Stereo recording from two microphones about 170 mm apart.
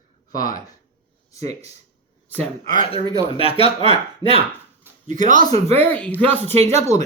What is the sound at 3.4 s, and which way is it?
Speech, 35° left (ahead or behind).